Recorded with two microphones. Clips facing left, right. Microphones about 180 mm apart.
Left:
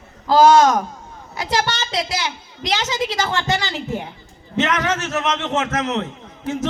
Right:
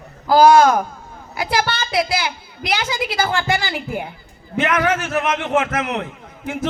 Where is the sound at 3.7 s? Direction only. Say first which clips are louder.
Even; 10° right (ahead or behind).